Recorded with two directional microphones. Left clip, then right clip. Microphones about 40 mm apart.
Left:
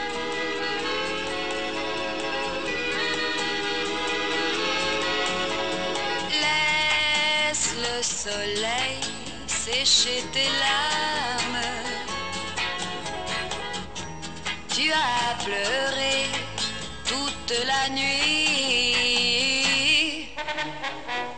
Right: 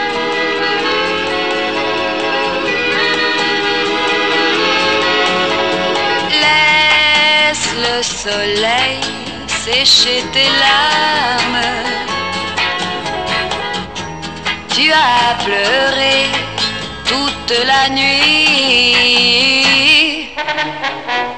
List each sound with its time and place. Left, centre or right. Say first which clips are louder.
0.0 s music: right 13 dB; left
14.7 s music: right 13 dB; left